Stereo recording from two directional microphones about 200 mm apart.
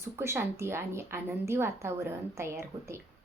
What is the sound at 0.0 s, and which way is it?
A woman's voice, 10° right (ahead or behind).